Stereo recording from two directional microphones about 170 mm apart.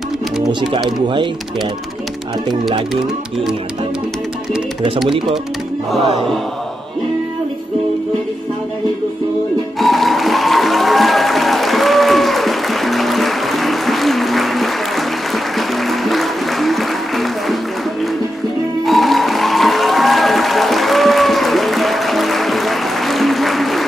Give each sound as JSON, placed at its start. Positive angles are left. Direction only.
{"t": 0.7, "sound": "speech", "side_deg": 0}
{"t": 1.0, "sound": "speech", "side_deg": -30}
{"t": 9.8, "sound": "music", "side_deg": 0}
{"t": 18.9, "sound": "music", "side_deg": 0}